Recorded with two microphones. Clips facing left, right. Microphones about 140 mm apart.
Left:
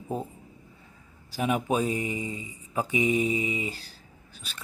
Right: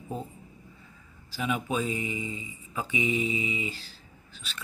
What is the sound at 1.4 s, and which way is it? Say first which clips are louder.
Speech: left 4 dB; 50° left (ahead or behind).